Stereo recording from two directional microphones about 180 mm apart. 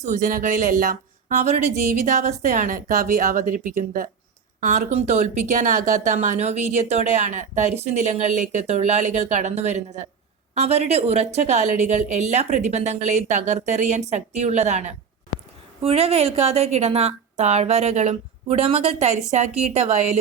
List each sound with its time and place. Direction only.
0.0 s speech: 45° right (ahead or behind)